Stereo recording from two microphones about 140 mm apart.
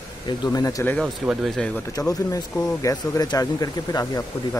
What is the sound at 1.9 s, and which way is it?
Speech, 25° left (ahead or behind).